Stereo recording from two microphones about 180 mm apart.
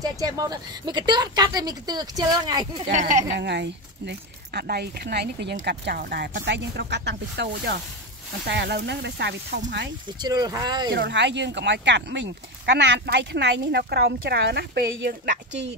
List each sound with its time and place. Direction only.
0.0 s speech: 20° right (ahead or behind)
2.9 s speech: 45° right (ahead or behind)
3.3 s speech: 70° right (ahead or behind)
6.4 s speech: 75° right (ahead or behind)
10.0 s speech: 20° right (ahead or behind)
10.9 s speech: 70° right (ahead or behind)